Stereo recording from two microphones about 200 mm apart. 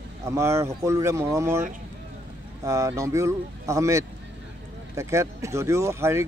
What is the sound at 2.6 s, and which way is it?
Speech, 15° right (ahead or behind).